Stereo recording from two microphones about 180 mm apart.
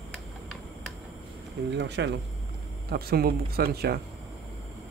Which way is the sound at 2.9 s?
60° right (ahead or behind).